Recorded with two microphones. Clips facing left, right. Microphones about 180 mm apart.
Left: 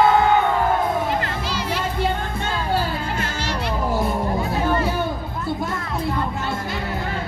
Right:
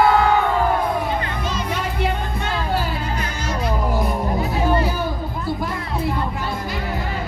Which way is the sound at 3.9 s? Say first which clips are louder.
Even; 25° left (ahead or behind).